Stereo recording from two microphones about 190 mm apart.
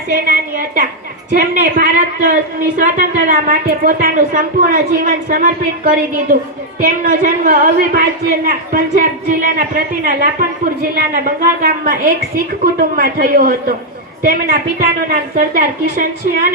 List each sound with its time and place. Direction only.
0.3 s a woman's voice: 45° right (ahead or behind)
13.0 s a woman's voice: 50° right (ahead or behind)